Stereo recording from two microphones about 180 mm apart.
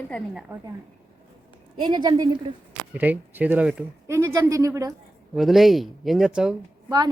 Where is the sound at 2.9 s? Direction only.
10° right (ahead or behind).